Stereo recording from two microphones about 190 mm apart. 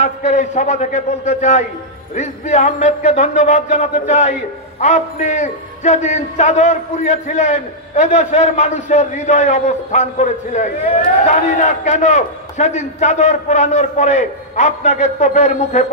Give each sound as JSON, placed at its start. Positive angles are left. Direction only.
{"t": 0.0, "sound": "speech", "side_deg": 35}